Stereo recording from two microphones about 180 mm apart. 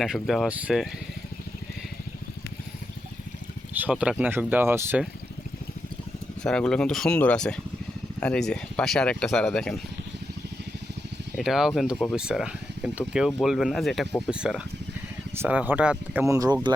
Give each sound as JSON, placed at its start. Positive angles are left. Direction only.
{"t": 0.0, "sound": "speech", "side_deg": 0}
{"t": 3.8, "sound": "speech", "side_deg": -5}
{"t": 6.4, "sound": "speech", "side_deg": 5}
{"t": 11.3, "sound": "speech", "side_deg": 0}
{"t": 16.2, "sound": "speech", "side_deg": -20}